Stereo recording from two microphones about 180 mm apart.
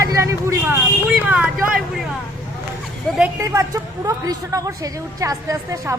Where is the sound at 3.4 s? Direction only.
15° right (ahead or behind).